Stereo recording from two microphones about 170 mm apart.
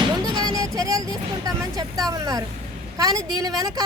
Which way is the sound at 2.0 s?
20° right (ahead or behind).